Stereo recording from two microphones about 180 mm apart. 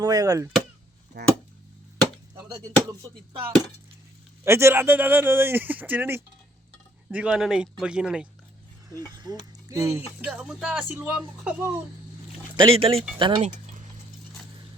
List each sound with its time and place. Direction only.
0.0 s chop: 20° right (ahead or behind)
1.1 s speech: 60° right (ahead or behind)
4.4 s speech: 15° right (ahead or behind)
9.0 s speech: 20° right (ahead or behind)
12.5 s speech: 30° right (ahead or behind)
13.1 s chop: 25° right (ahead or behind)